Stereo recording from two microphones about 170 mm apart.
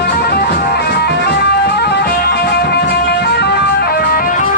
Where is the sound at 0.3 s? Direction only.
65° left (ahead or behind).